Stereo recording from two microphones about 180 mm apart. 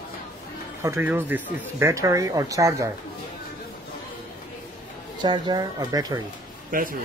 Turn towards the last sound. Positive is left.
turn(degrees=-50)  # may be behind; listen again after turning